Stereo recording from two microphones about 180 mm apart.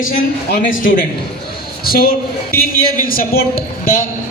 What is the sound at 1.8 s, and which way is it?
A man's voice, 55° left (ahead or behind).